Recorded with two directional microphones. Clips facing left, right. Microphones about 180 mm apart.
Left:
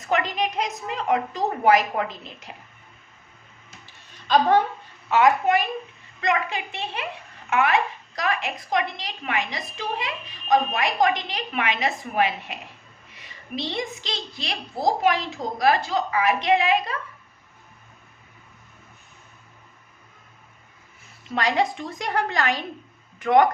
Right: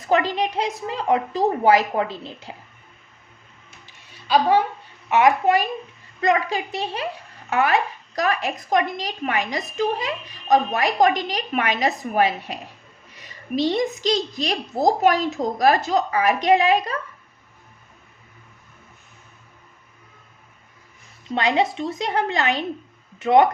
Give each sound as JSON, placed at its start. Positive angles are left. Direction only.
{"t": 0.0, "sound": "a woman's voice", "side_deg": -30}
{"t": 3.8, "sound": "a sound", "side_deg": -10}
{"t": 5.0, "sound": "a woman's voice", "side_deg": -20}
{"t": 6.1, "sound": "a woman's voice", "side_deg": -35}
{"t": 21.3, "sound": "a woman's voice", "side_deg": -25}